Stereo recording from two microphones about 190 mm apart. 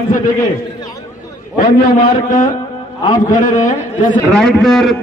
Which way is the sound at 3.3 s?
45° left (ahead or behind).